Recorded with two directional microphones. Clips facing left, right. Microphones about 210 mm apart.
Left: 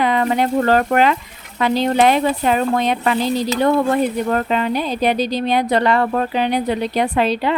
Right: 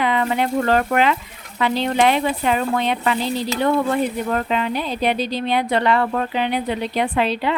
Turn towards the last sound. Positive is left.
turn(degrees=40)  # may be behind; listen again after turning